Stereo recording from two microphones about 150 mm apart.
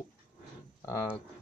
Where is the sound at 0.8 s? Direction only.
20° left (ahead or behind).